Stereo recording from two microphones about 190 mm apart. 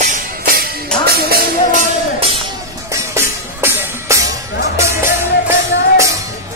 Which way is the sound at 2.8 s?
15° right (ahead or behind).